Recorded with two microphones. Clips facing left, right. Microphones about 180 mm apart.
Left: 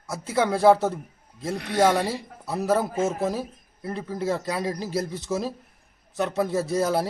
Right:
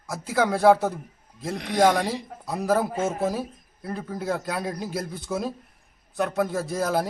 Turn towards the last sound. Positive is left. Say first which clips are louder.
# left 2 dB
turn(degrees=0)  # may be behind; listen again after turning